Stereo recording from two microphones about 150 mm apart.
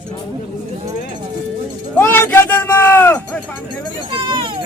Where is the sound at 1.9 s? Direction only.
15° left (ahead or behind).